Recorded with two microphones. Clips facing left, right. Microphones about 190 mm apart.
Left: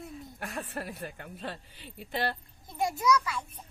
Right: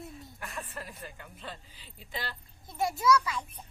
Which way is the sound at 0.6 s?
65° left (ahead or behind).